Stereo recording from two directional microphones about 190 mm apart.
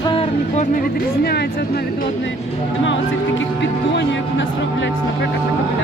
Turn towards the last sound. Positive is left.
turn(degrees=70)  # may be behind; listen again after turning